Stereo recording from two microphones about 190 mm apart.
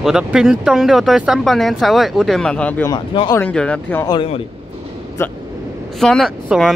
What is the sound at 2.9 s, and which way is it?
Speech, 25° left (ahead or behind).